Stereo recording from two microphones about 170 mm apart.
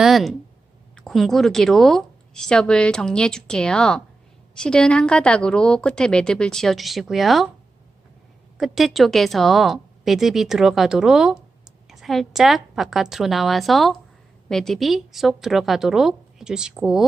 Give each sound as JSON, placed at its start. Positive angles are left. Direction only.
{"t": 0.0, "sound": "a woman's voice", "side_deg": 0}
{"t": 8.5, "sound": "a woman's voice", "side_deg": 0}